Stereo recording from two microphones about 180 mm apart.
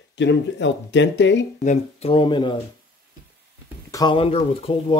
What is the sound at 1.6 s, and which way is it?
Speech, 35° left (ahead or behind).